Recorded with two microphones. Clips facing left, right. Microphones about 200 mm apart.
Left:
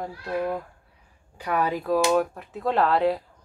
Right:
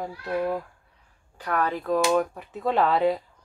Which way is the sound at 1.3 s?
10° left (ahead or behind).